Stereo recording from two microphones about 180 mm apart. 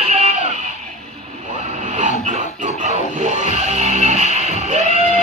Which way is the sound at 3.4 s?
40° right (ahead or behind).